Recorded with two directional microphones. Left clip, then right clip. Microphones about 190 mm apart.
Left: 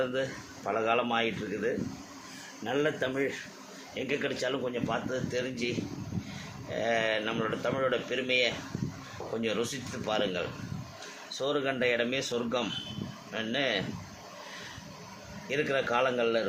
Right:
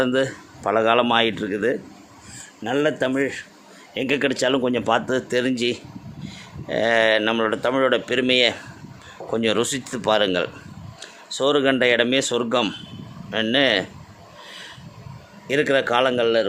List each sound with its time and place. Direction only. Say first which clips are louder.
0.0 s speech: right 10 dB; 65° right (ahead or behind)
15.4 s speech: right 10 dB; 60° right (ahead or behind)